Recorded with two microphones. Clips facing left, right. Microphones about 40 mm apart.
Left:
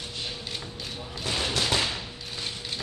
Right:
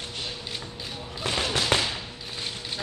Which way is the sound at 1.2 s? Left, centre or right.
Right.